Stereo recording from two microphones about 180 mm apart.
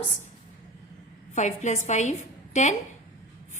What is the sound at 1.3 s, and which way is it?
A woman's voice, 40° left (ahead or behind).